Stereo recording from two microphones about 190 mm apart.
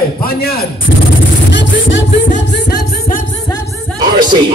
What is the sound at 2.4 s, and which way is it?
Music, 60° left (ahead or behind).